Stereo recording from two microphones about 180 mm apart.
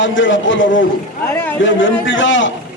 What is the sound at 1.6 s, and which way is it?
Speech, 90° left.